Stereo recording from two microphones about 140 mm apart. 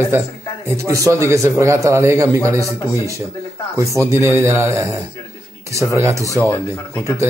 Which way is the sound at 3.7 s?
20° right (ahead or behind).